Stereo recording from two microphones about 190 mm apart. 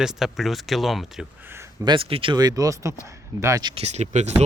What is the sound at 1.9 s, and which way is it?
Speech, 30° right (ahead or behind).